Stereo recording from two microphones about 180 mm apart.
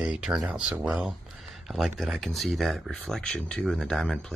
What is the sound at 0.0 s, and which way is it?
Speech, 5° right (ahead or behind).